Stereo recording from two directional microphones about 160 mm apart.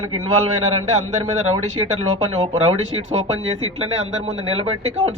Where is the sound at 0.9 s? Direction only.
40° right (ahead or behind).